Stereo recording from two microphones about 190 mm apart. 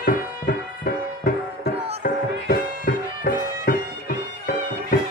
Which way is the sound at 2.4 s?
50° left (ahead or behind).